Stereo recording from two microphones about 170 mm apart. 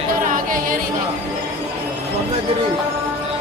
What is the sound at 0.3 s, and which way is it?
Music, 55° right (ahead or behind).